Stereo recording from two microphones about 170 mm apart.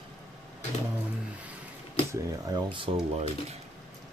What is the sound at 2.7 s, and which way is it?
Speech, 30° right (ahead or behind).